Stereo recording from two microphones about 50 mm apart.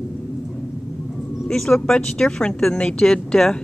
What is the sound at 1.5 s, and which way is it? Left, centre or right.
Speech, centre.